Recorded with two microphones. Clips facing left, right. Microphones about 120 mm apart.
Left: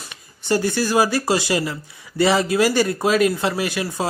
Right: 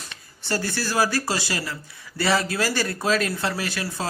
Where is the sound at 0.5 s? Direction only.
15° left (ahead or behind).